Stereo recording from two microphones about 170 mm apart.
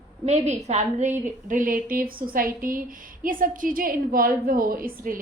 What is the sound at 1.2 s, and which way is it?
A woman's voice, 50° right (ahead or behind).